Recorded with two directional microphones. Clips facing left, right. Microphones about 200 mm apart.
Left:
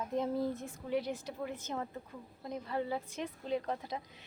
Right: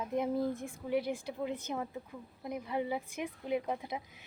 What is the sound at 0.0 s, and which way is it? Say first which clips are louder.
A woman's voice: right 1 dB; 15° right (ahead or behind).